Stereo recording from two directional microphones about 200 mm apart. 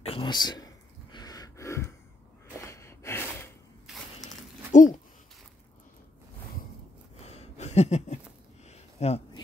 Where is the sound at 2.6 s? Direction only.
15° left (ahead or behind).